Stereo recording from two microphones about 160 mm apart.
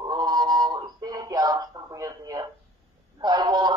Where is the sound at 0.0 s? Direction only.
25° right (ahead or behind).